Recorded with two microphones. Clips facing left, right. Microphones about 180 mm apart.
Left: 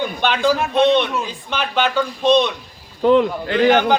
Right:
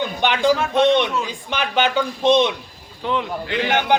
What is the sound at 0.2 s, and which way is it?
Speech, 15° right (ahead or behind).